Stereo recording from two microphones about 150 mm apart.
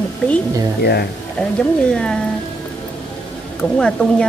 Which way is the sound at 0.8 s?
90° left.